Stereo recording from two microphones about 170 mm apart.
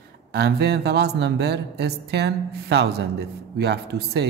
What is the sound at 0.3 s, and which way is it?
Speech, 70° right (ahead or behind).